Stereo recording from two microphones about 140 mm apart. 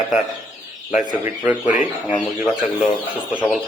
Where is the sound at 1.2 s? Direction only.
10° right (ahead or behind).